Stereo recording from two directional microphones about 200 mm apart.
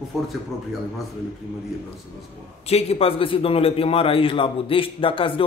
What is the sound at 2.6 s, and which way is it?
A man's voice, 30° left (ahead or behind).